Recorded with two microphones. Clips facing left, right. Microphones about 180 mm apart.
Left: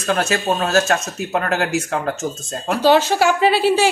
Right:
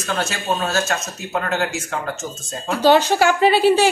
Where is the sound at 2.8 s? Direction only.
5° left (ahead or behind).